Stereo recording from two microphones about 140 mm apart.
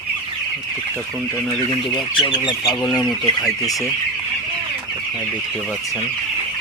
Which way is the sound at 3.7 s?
25° left (ahead or behind).